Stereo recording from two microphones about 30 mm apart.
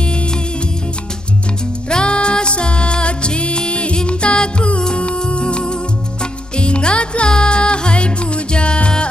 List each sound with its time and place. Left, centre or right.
1.9 s music: left